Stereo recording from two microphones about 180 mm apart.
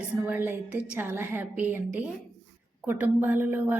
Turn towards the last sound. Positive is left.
turn(degrees=-10)  # may be behind; listen again after turning